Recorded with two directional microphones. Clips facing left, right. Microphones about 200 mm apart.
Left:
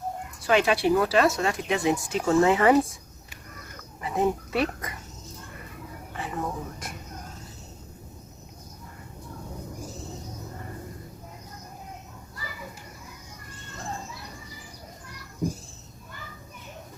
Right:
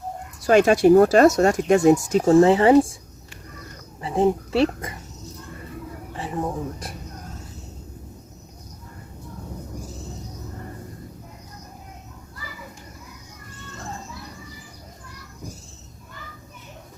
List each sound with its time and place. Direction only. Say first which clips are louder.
0.4 s speech: right 7 dB; 45° right (ahead or behind)
4.0 s speech: right 5 dB; 30° right (ahead or behind)
6.1 s speech: right 4 dB; 30° right (ahead or behind)